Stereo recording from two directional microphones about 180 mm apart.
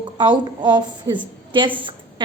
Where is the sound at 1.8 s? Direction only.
25° right (ahead or behind).